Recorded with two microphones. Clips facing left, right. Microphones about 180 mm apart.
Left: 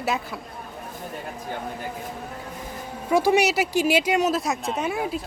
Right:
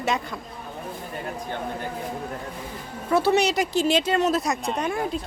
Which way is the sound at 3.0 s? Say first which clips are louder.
Left 1 dB; 10° left (ahead or behind).